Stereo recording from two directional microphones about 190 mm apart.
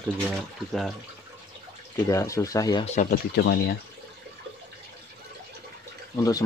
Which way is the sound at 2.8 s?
40° left (ahead or behind).